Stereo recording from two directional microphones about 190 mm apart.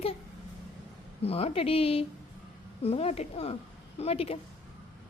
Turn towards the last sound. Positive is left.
turn(degrees=30)  # may be behind; listen again after turning